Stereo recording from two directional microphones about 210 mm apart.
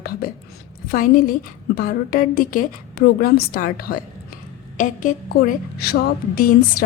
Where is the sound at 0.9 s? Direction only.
40° left (ahead or behind).